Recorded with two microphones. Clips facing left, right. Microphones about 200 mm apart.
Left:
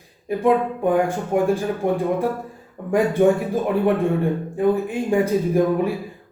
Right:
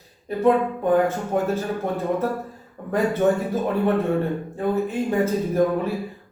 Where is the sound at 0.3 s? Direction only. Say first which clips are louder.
Even; 15° left (ahead or behind).